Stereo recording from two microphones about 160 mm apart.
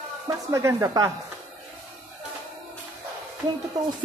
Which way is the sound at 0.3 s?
20° right (ahead or behind).